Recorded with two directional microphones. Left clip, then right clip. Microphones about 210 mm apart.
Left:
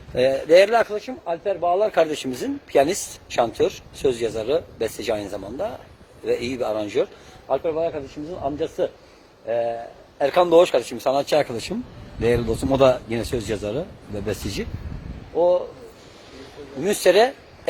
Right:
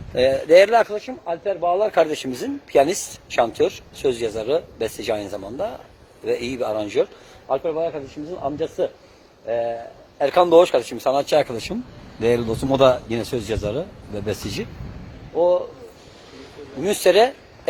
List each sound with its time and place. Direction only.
0.1 s speech: 10° right (ahead or behind)
16.8 s speech: 10° right (ahead or behind)